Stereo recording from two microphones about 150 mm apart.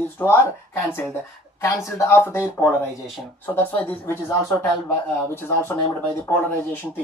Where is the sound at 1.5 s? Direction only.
20° left (ahead or behind).